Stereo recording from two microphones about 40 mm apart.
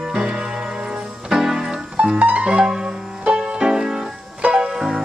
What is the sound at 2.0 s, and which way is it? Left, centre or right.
Music, right.